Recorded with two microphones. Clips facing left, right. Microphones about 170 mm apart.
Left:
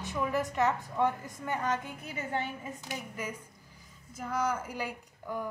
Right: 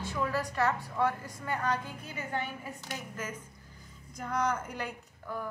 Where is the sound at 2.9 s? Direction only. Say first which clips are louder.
Left 1 dB; 10° left (ahead or behind).